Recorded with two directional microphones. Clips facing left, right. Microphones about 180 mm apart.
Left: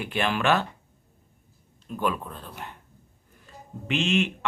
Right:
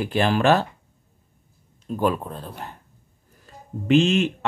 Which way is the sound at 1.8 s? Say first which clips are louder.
Right 5 dB; 35° right (ahead or behind).